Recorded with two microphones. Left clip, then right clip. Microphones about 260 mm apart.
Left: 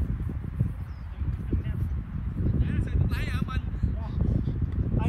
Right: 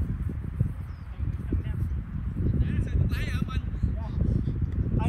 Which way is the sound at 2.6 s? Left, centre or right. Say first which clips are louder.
Even; centre.